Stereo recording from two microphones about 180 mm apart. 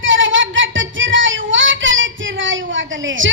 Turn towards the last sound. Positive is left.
turn(degrees=-90)